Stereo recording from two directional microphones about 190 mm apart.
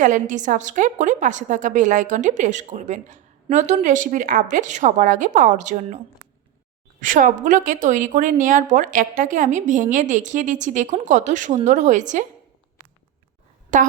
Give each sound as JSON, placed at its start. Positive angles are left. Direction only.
{"t": 0.0, "sound": "a woman's voice", "side_deg": -40}
{"t": 7.0, "sound": "a woman's voice", "side_deg": -45}
{"t": 13.7, "sound": "a woman's voice", "side_deg": -40}